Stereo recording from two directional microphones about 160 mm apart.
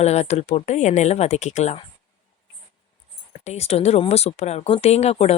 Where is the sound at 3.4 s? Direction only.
40° left (ahead or behind).